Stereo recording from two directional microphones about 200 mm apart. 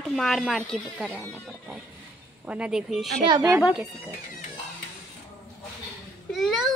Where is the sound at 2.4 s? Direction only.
5° right (ahead or behind).